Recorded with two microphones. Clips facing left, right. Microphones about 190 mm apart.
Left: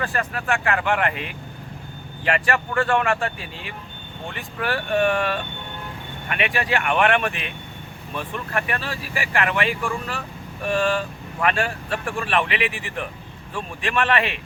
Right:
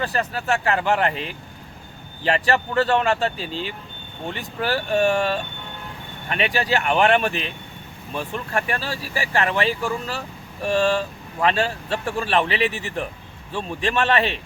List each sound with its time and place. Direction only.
0.0 s speech: 25° right (ahead or behind)